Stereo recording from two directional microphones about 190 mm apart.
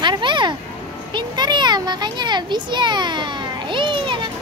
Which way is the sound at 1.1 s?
25° right (ahead or behind).